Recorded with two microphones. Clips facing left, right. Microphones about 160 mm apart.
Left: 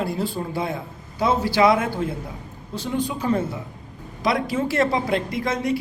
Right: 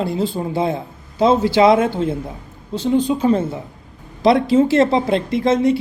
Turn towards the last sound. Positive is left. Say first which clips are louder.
# right 8 dB
turn(degrees=-25)  # may be behind; listen again after turning